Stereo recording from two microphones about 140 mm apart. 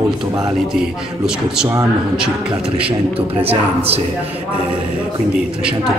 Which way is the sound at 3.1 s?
45° right (ahead or behind).